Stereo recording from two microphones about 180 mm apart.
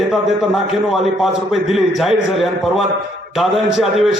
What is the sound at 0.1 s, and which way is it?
A man's voice, centre (ahead or behind).